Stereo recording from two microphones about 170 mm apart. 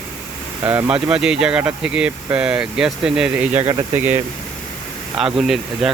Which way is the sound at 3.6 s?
30° right (ahead or behind).